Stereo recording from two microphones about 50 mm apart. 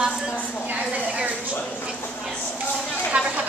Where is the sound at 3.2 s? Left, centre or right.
Right.